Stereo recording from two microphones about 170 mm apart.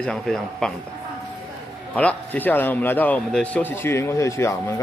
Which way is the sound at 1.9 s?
10° left (ahead or behind).